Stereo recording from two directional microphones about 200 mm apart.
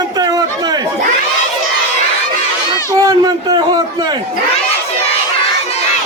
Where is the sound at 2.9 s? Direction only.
20° right (ahead or behind).